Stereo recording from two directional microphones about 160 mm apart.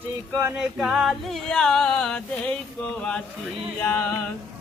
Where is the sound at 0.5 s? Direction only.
5° right (ahead or behind).